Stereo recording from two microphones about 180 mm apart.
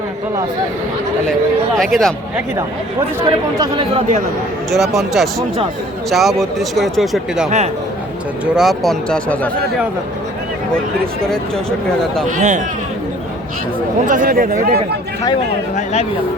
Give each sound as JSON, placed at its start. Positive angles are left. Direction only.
{"t": 1.2, "sound": "speech", "side_deg": 5}
{"t": 3.2, "sound": "speech", "side_deg": -30}
{"t": 4.7, "sound": "speech", "side_deg": 0}
{"t": 8.5, "sound": "speech", "side_deg": 0}
{"t": 12.4, "sound": "speech", "side_deg": -45}
{"t": 14.0, "sound": "speech", "side_deg": -45}
{"t": 15.7, "sound": "speech", "side_deg": 40}